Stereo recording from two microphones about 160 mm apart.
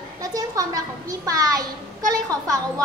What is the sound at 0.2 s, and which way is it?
A woman's voice, 20° right (ahead or behind).